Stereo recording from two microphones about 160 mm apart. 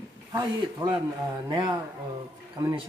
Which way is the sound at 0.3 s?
25° right (ahead or behind).